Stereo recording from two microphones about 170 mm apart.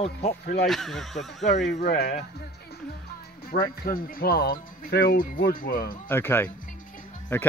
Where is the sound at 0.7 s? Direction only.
Centre (ahead or behind).